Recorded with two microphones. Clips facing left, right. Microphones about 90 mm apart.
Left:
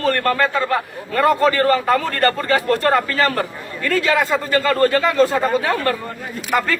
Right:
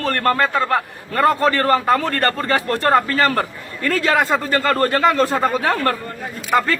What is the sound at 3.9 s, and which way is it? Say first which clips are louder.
A man's voice: even; 50° right (ahead or behind).